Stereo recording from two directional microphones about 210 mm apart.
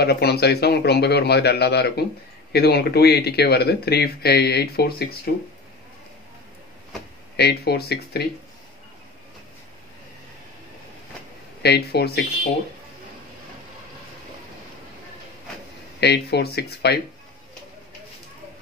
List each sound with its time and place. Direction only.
0.0 s speech: 50° left (ahead or behind)
7.3 s speech: 50° left (ahead or behind)
11.6 s speech: 50° left (ahead or behind)
16.0 s speech: 50° left (ahead or behind)